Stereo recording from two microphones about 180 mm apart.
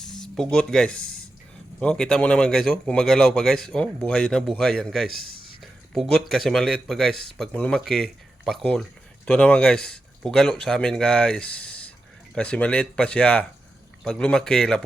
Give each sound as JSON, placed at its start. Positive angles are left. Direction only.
{"t": 0.0, "sound": "speech", "side_deg": 0}
{"t": 5.3, "sound": "a sound", "side_deg": 55}
{"t": 5.9, "sound": "speech", "side_deg": 0}